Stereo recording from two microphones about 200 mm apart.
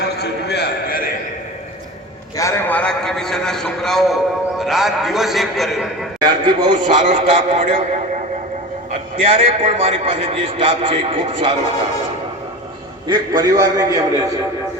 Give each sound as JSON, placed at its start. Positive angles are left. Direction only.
{"t": 0.0, "sound": "a sound", "side_deg": 55}
{"t": 2.3, "sound": "a man's voice", "side_deg": 15}
{"t": 6.1, "sound": "a man's voice", "side_deg": -25}
{"t": 7.1, "sound": "speech", "side_deg": -40}
{"t": 8.9, "sound": "a man's voice", "side_deg": -30}
{"t": 13.1, "sound": "a man's voice", "side_deg": -20}